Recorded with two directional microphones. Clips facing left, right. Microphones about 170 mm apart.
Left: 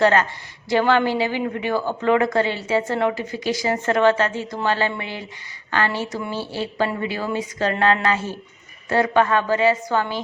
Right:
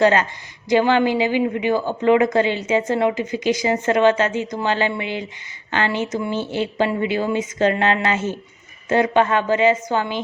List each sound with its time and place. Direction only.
0.0 s speech: 15° right (ahead or behind)